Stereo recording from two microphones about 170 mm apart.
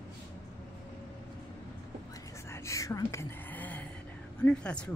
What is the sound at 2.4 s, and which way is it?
Whispering, 15° left (ahead or behind).